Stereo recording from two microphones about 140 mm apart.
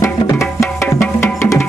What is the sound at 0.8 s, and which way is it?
Music, 20° left (ahead or behind).